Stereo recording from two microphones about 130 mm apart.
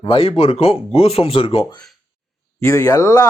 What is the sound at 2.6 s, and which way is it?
Speech, 25° left (ahead or behind).